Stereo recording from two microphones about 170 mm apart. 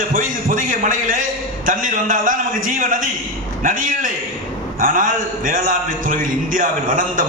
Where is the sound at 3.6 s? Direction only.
50° right (ahead or behind).